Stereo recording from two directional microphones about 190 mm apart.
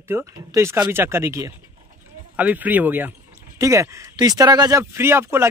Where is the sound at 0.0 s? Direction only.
15° right (ahead or behind).